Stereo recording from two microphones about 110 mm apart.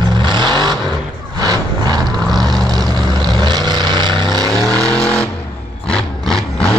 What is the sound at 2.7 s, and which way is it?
Vehicle, 40° right (ahead or behind).